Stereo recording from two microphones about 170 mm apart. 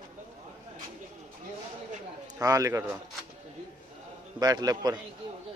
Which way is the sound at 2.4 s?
20° right (ahead or behind).